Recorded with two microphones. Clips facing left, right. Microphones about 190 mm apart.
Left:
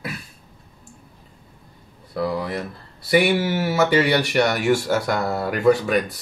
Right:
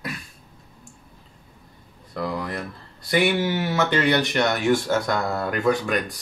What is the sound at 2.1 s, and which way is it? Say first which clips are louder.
Speech: left 4 dB; 5° left (ahead or behind).